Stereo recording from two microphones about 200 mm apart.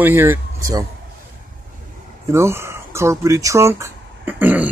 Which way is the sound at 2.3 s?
15° right (ahead or behind).